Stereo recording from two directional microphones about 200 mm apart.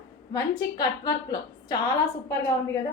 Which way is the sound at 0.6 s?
20° left (ahead or behind).